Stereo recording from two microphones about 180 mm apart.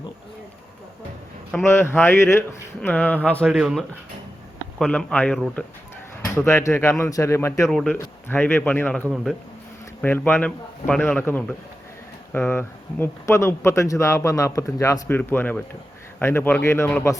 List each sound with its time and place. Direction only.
1.5 s speech: 15° left (ahead or behind)
7.7 s speech: 5° left (ahead or behind)